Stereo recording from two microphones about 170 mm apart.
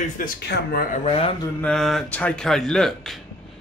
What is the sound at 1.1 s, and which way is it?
Speech, 35° left (ahead or behind).